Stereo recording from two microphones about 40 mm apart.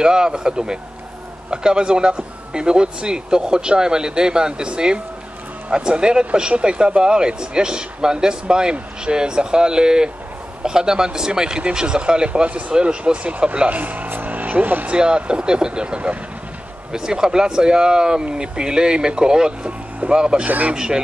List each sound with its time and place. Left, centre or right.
0.0 s speech: centre
13.7 s speech: right
14.2 s vehicle: right
14.9 s speech: right
16.9 s speech: centre
20.4 s speech: right
20.7 s speech: centre